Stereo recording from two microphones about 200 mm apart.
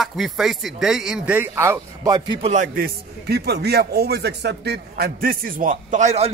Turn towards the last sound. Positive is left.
turn(degrees=-35)  # may be behind; listen again after turning